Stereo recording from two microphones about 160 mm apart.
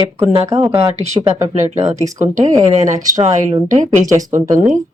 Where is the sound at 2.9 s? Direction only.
55° right (ahead or behind).